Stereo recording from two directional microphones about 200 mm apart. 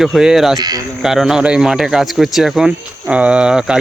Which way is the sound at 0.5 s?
20° right (ahead or behind).